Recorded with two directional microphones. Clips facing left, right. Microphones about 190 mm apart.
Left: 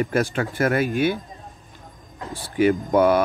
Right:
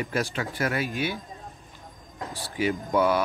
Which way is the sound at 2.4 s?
50° left (ahead or behind).